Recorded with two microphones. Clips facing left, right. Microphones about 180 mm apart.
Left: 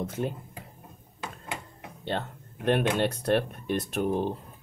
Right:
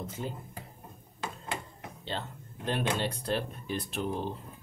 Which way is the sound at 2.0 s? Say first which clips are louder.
Left 6 dB; 60° left (ahead or behind).